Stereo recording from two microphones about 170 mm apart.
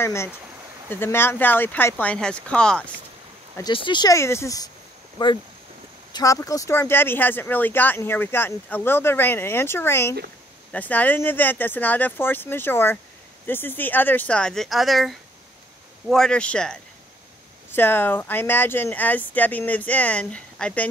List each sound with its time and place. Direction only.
0.0 s speech: 15° left (ahead or behind)
3.5 s speech: 25° left (ahead or behind); by 20.9 s 5° left (ahead or behind)